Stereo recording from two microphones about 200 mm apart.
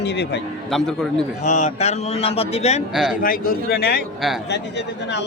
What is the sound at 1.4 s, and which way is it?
A man's voice, 35° left (ahead or behind).